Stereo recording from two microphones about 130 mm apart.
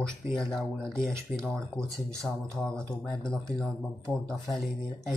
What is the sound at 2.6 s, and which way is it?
Speech, 5° left (ahead or behind).